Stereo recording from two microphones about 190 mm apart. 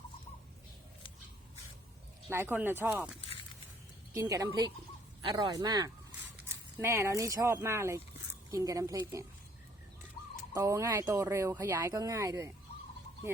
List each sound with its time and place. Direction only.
2.3 s speech: 10° right (ahead or behind)
4.1 s speech: 15° right (ahead or behind)
10.5 s speech: 15° right (ahead or behind)